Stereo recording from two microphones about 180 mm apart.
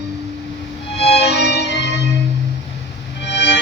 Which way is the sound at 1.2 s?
65° left (ahead or behind).